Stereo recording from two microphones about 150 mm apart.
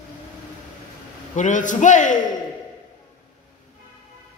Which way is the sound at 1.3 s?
55° left (ahead or behind).